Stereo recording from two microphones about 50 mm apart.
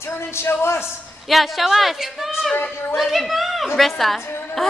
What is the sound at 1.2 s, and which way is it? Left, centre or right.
Speech, centre.